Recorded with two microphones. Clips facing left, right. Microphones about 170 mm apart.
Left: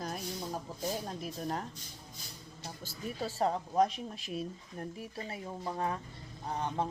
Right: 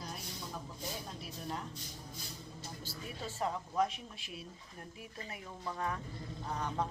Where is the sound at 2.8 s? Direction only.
35° left (ahead or behind).